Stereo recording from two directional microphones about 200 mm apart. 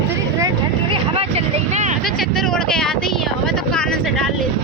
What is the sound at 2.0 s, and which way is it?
Speech, centre (ahead or behind).